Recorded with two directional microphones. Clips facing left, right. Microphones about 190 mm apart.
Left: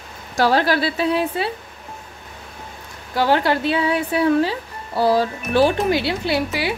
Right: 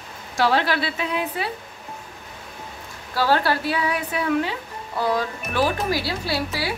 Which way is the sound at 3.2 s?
20° left (ahead or behind).